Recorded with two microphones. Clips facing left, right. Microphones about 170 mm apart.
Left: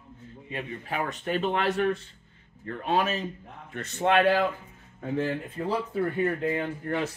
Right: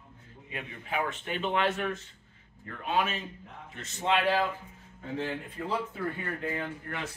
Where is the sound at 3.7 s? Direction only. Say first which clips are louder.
Left 6 dB; 60° left (ahead or behind).